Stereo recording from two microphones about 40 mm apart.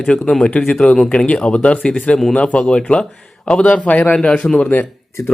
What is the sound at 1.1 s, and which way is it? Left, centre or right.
Speech, left.